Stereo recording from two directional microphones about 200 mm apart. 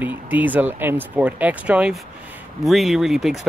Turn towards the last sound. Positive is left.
turn(degrees=0)  # may be behind; listen again after turning